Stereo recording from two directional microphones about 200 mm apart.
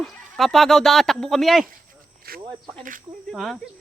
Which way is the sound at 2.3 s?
50° right (ahead or behind).